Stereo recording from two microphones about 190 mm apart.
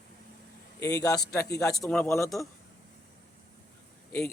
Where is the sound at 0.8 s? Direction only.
20° left (ahead or behind).